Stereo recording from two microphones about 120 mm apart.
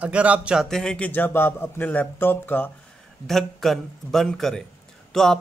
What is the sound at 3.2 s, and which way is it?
Speech, centre (ahead or behind).